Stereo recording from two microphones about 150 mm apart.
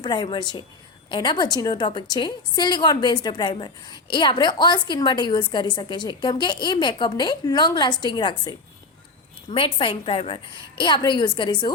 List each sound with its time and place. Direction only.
0.0 s a woman's voice: 30° left (ahead or behind)